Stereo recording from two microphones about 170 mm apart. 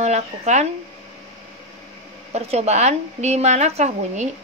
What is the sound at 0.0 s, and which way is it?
Speech, 40° right (ahead or behind).